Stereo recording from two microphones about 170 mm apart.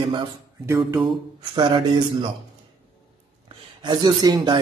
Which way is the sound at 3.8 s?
25° right (ahead or behind).